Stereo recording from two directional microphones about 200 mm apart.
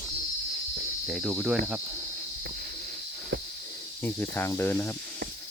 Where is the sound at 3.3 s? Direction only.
60° right (ahead or behind).